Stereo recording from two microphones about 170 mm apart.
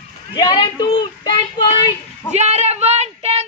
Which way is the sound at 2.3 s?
40° right (ahead or behind).